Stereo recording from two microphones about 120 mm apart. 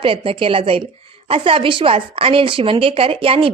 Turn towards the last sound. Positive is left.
turn(degrees=-50)  # may be behind; listen again after turning